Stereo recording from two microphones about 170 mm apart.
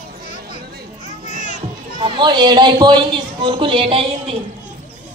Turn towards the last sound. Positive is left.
turn(degrees=-30)  # may be behind; listen again after turning